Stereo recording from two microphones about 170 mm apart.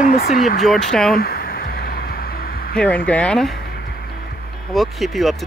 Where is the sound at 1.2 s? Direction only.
60° left (ahead or behind).